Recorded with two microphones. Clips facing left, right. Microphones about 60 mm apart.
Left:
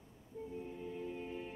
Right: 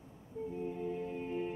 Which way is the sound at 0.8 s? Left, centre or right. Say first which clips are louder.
Right 5 dB; right.